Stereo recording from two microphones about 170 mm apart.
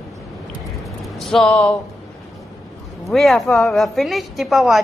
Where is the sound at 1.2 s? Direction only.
Centre (ahead or behind).